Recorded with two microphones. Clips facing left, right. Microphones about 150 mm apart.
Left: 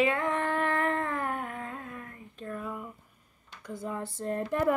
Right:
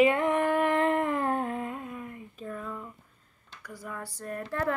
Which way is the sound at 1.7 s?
10° right (ahead or behind).